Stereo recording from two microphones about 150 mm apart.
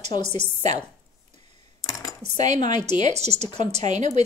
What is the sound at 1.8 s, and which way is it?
Dishes, 25° left (ahead or behind).